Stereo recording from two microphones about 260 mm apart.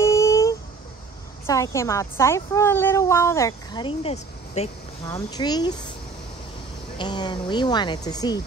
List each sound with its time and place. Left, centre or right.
0.0 s a sound: centre
1.4 s a woman's voice: centre
7.0 s a woman's voice: centre